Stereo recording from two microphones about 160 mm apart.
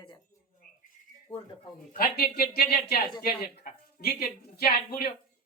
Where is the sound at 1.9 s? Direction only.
70° left (ahead or behind).